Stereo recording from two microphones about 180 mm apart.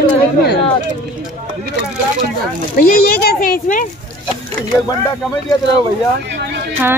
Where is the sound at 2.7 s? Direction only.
55° left (ahead or behind).